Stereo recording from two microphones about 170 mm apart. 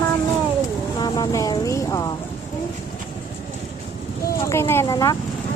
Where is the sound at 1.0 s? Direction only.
20° left (ahead or behind).